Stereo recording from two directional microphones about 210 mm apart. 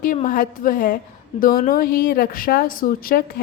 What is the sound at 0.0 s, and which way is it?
A woman's voice, 40° left (ahead or behind).